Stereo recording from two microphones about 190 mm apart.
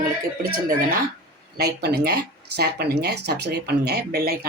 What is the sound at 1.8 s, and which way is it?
Speech, 60° right (ahead or behind).